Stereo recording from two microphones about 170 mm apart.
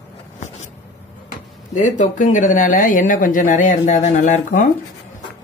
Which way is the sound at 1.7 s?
45° left (ahead or behind).